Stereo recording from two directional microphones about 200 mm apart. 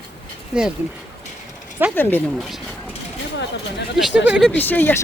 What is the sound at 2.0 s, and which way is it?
Speech, 10° left (ahead or behind).